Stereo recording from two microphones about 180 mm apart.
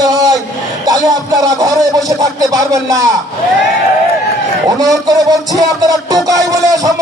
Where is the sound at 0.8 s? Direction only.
20° right (ahead or behind).